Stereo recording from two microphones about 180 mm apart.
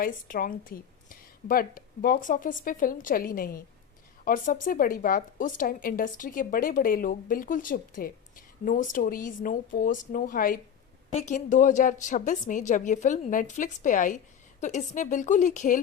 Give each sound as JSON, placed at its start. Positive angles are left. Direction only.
{"t": 0.0, "sound": "a woman's voice", "side_deg": 50}